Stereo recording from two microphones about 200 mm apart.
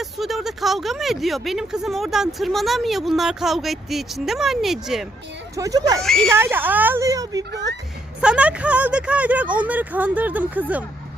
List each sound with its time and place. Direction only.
0.0 s speech: centre (ahead or behind)
5.5 s speech: 20° right (ahead or behind)
6.0 s speech: centre (ahead or behind)
6.3 s speech: 10° right (ahead or behind)
7.5 s speech: 60° right (ahead or behind)
8.2 s speech: 5° right (ahead or behind)